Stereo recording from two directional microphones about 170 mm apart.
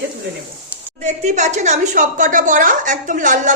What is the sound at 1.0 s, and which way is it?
A woman's voice, 45° right (ahead or behind).